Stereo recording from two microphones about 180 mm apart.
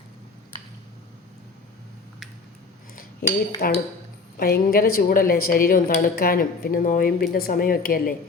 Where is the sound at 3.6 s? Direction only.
55° left (ahead or behind).